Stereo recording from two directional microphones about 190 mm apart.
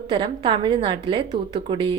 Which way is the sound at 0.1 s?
25° right (ahead or behind).